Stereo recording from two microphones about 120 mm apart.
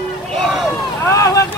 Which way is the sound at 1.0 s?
25° left (ahead or behind).